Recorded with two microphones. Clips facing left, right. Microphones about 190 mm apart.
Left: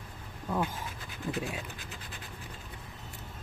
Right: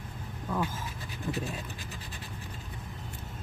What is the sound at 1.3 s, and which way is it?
Speech, 20° left (ahead or behind).